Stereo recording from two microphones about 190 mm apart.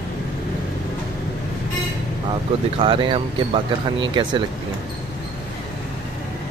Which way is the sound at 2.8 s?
25° right (ahead or behind).